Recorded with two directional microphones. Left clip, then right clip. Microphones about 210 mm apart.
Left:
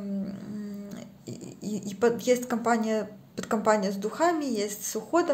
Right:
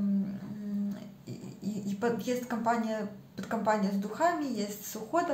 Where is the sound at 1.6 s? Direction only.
50° left (ahead or behind).